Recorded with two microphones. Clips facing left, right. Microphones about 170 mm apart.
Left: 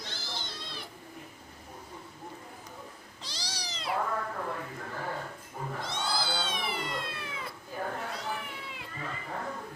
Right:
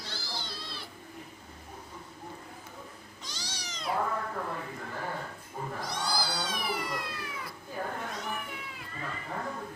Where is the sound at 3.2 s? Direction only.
35° left (ahead or behind).